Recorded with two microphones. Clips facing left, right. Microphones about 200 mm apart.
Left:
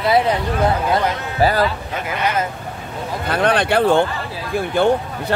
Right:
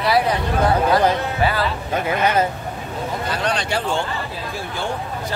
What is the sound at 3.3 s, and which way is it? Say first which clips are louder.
Speech: left 8 dB; 55° left (ahead or behind).